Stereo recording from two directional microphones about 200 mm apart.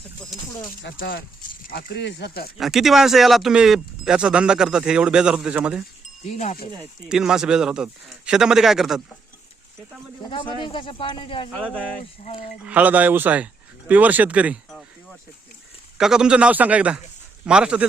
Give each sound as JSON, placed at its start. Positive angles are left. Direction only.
{"t": 0.8, "sound": "speech", "side_deg": 55}
{"t": 2.6, "sound": "speech", "side_deg": 0}
{"t": 6.2, "sound": "speech", "side_deg": 35}
{"t": 6.7, "sound": "speech", "side_deg": -5}
{"t": 10.2, "sound": "speech", "side_deg": 25}
{"t": 12.6, "sound": "a man's voice", "side_deg": -10}
{"t": 16.0, "sound": "speech", "side_deg": -5}